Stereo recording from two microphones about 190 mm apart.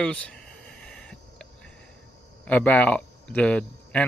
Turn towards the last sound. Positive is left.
turn(degrees=5)  # may be behind; listen again after turning